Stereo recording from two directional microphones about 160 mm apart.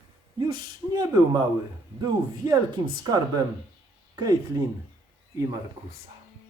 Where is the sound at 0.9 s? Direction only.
25° right (ahead or behind).